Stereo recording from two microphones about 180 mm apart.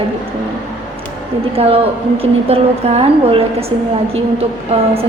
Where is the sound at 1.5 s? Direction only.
30° right (ahead or behind).